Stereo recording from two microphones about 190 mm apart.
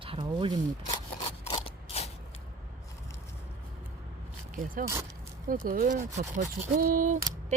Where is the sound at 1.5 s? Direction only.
30° left (ahead or behind).